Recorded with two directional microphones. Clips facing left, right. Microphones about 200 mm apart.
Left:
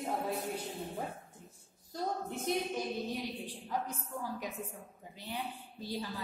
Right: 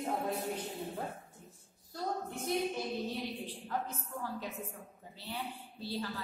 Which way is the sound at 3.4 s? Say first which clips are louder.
Even; 15° left (ahead or behind).